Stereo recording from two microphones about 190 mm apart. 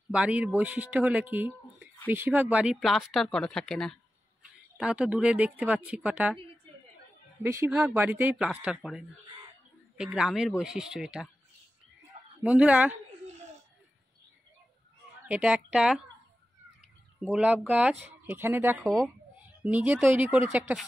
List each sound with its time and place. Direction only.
0.1 s speech: 5° right (ahead or behind)
7.4 s speech: 15° right (ahead or behind)
12.1 s a sound: 40° right (ahead or behind)
12.4 s speech: 5° right (ahead or behind)
15.2 s speech: 5° right (ahead or behind)
17.2 s speech: 5° right (ahead or behind)
18.9 s speech: centre (ahead or behind)